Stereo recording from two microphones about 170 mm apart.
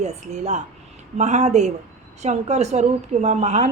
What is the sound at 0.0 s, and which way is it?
A woman's voice, 45° right (ahead or behind).